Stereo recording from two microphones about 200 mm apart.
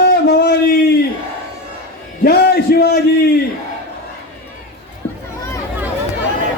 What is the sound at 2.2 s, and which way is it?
Speech, 50° left (ahead or behind).